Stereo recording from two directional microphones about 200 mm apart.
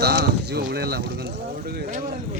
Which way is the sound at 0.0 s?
55° right (ahead or behind).